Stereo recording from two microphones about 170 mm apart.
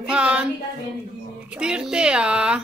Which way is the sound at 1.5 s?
5° right (ahead or behind).